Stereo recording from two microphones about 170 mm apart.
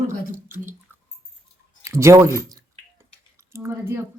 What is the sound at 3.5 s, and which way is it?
Speech, 15° right (ahead or behind).